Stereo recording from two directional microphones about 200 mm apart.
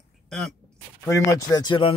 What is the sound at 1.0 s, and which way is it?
Speech, 15° left (ahead or behind).